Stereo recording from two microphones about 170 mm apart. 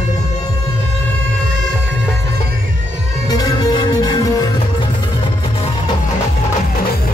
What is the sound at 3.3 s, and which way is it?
Music, 25° left (ahead or behind).